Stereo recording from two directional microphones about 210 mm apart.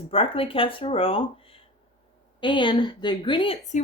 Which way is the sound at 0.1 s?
25° left (ahead or behind).